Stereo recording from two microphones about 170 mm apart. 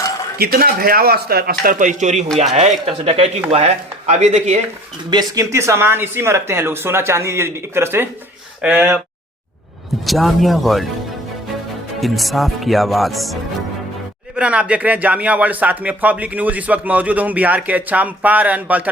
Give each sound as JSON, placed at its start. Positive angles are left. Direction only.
{"t": 0.3, "sound": "a man's voice", "side_deg": -65}
{"t": 5.1, "sound": "speech", "side_deg": -20}
{"t": 10.1, "sound": "speech", "side_deg": 0}
{"t": 11.9, "sound": "speech", "side_deg": 0}